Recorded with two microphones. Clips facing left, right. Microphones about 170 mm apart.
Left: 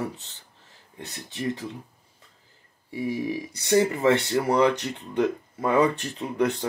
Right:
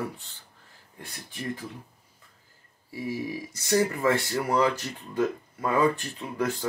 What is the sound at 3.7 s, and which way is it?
Speech, 20° left (ahead or behind).